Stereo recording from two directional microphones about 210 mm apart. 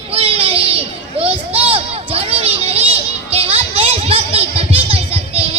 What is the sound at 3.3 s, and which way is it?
Music, 30° right (ahead or behind).